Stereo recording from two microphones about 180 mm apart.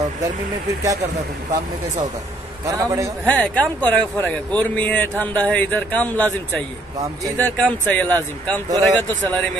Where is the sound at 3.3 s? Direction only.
5° left (ahead or behind).